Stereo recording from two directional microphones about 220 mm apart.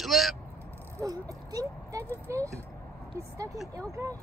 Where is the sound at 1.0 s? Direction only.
15° right (ahead or behind).